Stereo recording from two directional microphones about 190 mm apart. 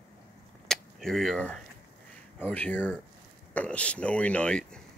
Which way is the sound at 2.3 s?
10° left (ahead or behind).